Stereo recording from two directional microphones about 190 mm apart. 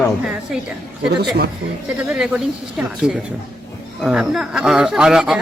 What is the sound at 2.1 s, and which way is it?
Speech, 5° right (ahead or behind).